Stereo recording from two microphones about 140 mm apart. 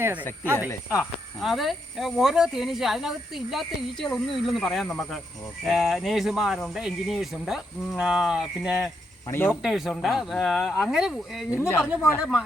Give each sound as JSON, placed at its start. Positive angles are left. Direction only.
{"t": 0.0, "sound": "speech", "side_deg": -10}
{"t": 0.9, "sound": "speech", "side_deg": 0}
{"t": 9.2, "sound": "speech", "side_deg": 20}
{"t": 9.5, "sound": "speech", "side_deg": 0}